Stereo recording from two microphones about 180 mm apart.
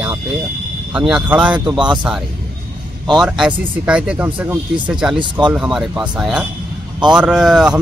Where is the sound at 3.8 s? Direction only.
5° right (ahead or behind).